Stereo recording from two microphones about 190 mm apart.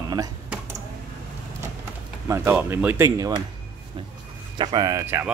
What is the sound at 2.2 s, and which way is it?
Speech, 15° right (ahead or behind).